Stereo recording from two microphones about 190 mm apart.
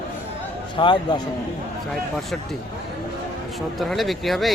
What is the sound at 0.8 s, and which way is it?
Speech, 25° left (ahead or behind).